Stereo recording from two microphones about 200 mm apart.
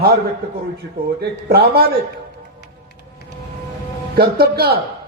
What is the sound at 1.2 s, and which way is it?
Speech, 55° right (ahead or behind).